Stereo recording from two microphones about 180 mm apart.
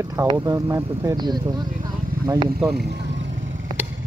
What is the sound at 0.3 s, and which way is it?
Speech, 20° right (ahead or behind).